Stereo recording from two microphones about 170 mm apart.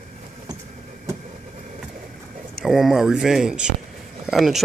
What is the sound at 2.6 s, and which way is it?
Speech, centre (ahead or behind).